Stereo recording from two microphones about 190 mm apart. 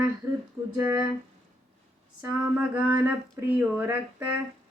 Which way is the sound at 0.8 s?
10° right (ahead or behind).